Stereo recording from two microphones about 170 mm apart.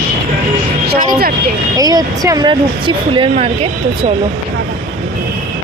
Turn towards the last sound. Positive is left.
turn(degrees=-35)  # may be behind; listen again after turning